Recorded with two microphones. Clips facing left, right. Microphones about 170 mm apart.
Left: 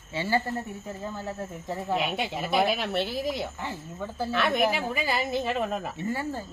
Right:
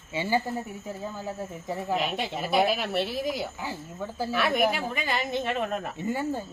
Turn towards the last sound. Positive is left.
turn(degrees=-15)  # may be behind; listen again after turning